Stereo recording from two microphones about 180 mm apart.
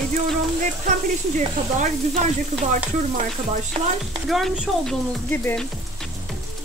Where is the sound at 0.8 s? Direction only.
45° right (ahead or behind).